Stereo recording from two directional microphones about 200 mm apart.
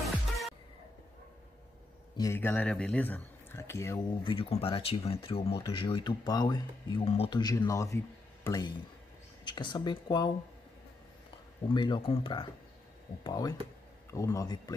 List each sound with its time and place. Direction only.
0.0 s music: centre (ahead or behind)
2.1 s speech: 15° left (ahead or behind)
4.2 s speech: 25° left (ahead or behind)
11.7 s speech: 25° left (ahead or behind)